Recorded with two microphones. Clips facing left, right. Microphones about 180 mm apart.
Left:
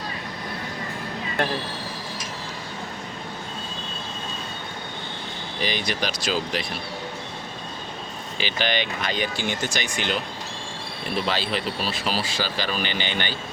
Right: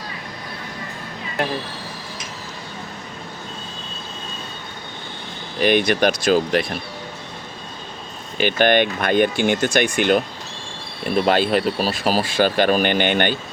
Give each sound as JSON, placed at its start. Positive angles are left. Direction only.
{"t": 5.5, "sound": "speech", "side_deg": -60}
{"t": 8.4, "sound": "speech", "side_deg": -55}
{"t": 11.3, "sound": "speech", "side_deg": -50}